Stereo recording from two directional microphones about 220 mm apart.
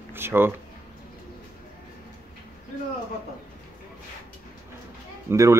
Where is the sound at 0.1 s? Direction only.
10° right (ahead or behind).